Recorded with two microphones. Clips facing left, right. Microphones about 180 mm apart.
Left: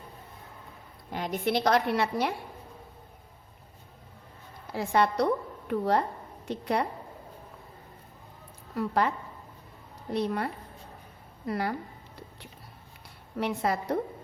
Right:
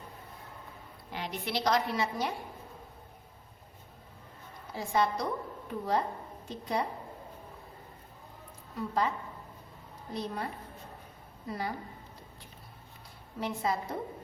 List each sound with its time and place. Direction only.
1.1 s a woman's voice: 45° left (ahead or behind); by 2.3 s 65° left (ahead or behind)
4.7 s a woman's voice: 70° left (ahead or behind)
8.7 s a woman's voice: 70° left (ahead or behind)
13.4 s a woman's voice: 70° left (ahead or behind)